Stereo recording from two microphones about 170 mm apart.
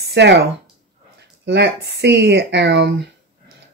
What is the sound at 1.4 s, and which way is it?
Speech, 80° right.